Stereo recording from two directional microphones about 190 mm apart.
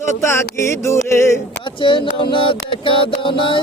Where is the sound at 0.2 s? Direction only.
15° left (ahead or behind).